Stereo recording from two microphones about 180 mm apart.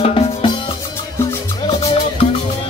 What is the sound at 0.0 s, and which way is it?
Music, 30° left (ahead or behind).